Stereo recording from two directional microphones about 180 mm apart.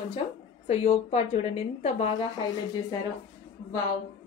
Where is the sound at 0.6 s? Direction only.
35° left (ahead or behind).